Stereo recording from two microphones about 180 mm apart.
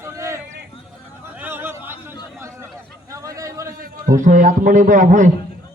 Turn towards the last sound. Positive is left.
turn(degrees=-45)  # may be behind; listen again after turning